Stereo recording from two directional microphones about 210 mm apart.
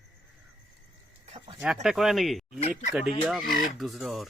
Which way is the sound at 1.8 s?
Centre (ahead or behind).